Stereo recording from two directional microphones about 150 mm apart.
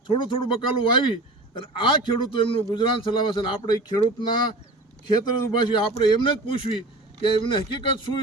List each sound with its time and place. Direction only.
0.1 s a man's voice: 35° left (ahead or behind)